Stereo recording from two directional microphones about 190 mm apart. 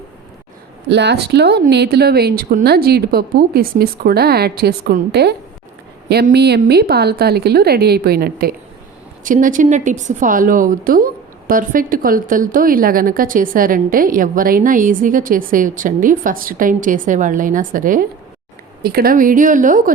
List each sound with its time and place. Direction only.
0.9 s speech: 65° right (ahead or behind)
9.2 s a woman's voice: 45° right (ahead or behind)